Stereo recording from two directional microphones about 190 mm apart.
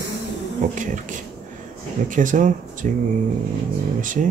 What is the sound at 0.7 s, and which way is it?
Speech, 40° right (ahead or behind).